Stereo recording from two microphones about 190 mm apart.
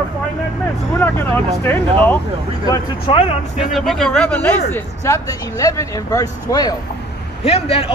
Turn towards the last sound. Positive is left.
turn(degrees=30)  # may be behind; listen again after turning